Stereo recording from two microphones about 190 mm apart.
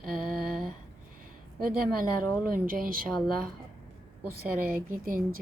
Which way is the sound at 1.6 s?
50° right (ahead or behind).